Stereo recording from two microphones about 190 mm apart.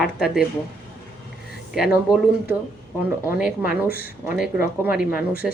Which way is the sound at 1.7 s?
Centre (ahead or behind).